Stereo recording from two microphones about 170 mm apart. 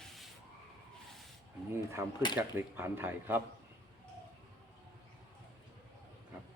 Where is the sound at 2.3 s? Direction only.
15° right (ahead or behind).